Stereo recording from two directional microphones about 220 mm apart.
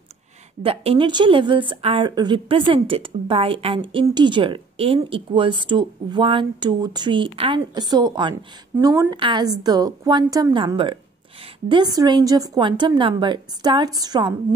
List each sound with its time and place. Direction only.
0.6 s a woman's voice: 25° right (ahead or behind)